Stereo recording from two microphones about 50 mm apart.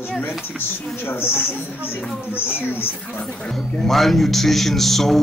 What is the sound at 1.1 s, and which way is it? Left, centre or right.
Speech, left.